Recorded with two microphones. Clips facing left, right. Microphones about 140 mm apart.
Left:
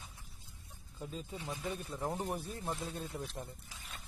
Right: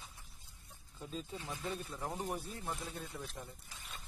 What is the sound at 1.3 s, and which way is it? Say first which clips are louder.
Speech: left 2 dB; 15° left (ahead or behind).